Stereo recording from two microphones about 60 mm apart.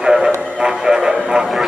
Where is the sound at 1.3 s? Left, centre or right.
Centre.